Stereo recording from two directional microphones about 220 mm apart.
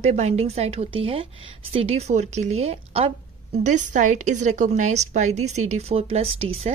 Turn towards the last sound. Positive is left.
turn(degrees=-25)  # may be behind; listen again after turning